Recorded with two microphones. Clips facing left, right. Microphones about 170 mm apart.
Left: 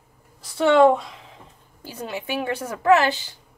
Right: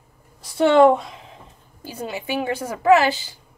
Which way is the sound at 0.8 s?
20° right (ahead or behind).